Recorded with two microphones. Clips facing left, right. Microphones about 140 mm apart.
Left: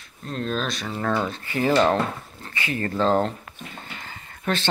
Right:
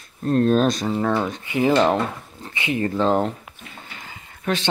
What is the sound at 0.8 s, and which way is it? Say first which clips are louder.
Speech: right 4 dB; 20° right (ahead or behind).